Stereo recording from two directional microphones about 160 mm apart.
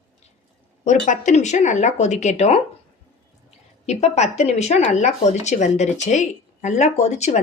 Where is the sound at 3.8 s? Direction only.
45° left (ahead or behind).